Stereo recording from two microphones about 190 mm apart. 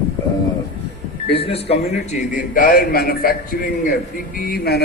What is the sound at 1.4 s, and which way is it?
A man's voice, 30° left (ahead or behind).